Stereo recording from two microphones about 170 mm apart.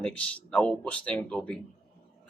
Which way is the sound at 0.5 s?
5° left (ahead or behind).